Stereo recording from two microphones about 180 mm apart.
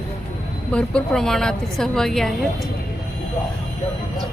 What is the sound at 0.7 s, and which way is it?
A woman's voice, 5° left (ahead or behind).